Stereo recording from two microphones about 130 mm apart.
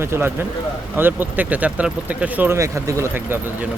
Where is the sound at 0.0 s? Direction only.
20° right (ahead or behind).